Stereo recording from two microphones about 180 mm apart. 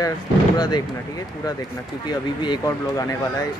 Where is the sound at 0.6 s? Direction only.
20° left (ahead or behind).